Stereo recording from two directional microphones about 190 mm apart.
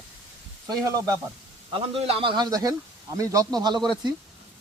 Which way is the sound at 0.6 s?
20° right (ahead or behind).